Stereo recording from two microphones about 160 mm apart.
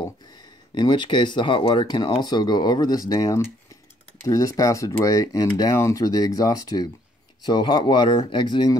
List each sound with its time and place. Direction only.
0.7 s speech: 30° left (ahead or behind)